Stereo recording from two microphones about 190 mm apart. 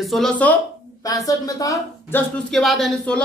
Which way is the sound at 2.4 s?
Centre (ahead or behind).